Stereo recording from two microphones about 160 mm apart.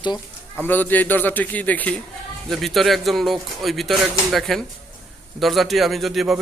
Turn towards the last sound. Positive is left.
turn(degrees=0)  # may be behind; listen again after turning